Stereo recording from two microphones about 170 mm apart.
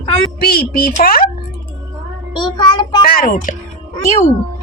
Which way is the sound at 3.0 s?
60° left (ahead or behind).